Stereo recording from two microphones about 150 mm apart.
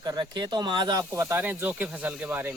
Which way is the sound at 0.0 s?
30° right (ahead or behind).